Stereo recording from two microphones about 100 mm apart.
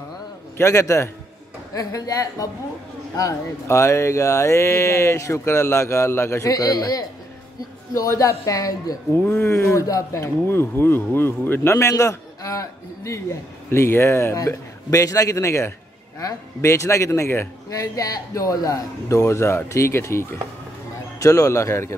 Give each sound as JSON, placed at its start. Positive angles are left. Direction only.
{"t": 0.6, "sound": "speech", "side_deg": 30}
{"t": 9.1, "sound": "speech", "side_deg": 20}